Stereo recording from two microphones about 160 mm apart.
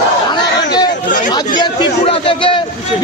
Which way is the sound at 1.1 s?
55° left (ahead or behind).